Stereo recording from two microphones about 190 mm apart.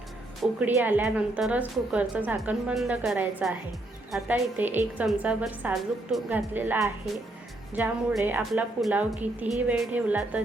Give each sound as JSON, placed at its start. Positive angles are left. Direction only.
{"t": 0.4, "sound": "a woman's voice", "side_deg": -5}